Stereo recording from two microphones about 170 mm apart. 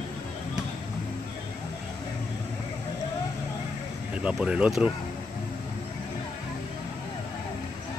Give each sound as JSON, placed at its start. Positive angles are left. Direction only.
{"t": 4.1, "sound": "speech", "side_deg": -5}